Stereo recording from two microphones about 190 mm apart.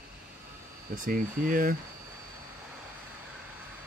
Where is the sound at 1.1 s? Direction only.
45° right (ahead or behind).